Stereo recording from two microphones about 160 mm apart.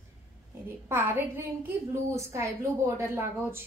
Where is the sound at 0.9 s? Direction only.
15° right (ahead or behind).